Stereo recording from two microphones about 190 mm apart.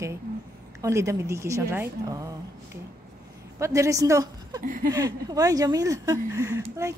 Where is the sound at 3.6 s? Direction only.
15° right (ahead or behind).